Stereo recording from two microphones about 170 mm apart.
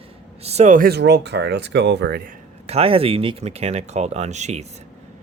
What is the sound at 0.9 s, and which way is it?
Speech, 75° right (ahead or behind).